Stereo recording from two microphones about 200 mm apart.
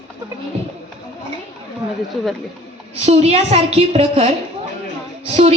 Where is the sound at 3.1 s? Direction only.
30° right (ahead or behind).